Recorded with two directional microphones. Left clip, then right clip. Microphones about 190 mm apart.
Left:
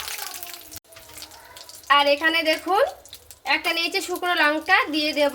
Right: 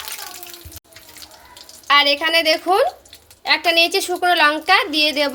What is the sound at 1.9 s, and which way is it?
A woman's voice, 50° right (ahead or behind).